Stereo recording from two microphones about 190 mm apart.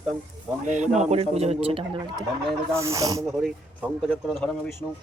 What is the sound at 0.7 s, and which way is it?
Speech, 40° right (ahead or behind).